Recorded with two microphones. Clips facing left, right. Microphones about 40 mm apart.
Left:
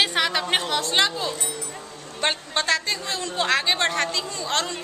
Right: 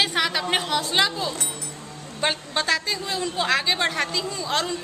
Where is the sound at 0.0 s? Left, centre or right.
Centre.